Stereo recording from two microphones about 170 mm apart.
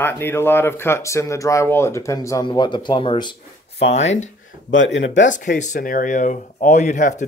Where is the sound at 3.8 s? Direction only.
40° left (ahead or behind).